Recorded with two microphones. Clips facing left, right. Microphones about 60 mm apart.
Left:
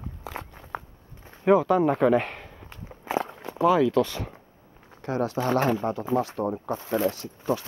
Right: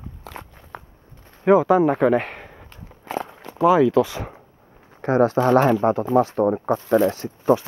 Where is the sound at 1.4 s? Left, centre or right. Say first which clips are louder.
Right 4 dB; centre.